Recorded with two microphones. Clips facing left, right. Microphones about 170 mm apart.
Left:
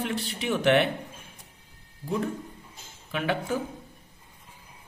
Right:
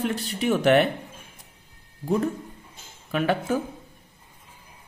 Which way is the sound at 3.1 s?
45° right (ahead or behind).